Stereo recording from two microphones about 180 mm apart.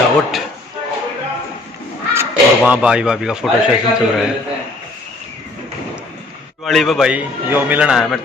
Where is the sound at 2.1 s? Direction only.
10° right (ahead or behind).